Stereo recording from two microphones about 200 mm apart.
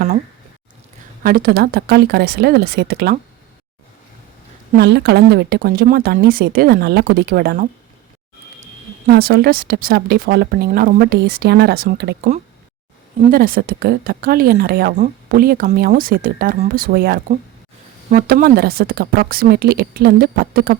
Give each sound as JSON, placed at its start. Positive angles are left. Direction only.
{"t": 1.2, "sound": "speech", "side_deg": -50}
{"t": 4.8, "sound": "speech", "side_deg": -55}
{"t": 9.0, "sound": "speech", "side_deg": -50}
{"t": 13.3, "sound": "speech", "side_deg": -45}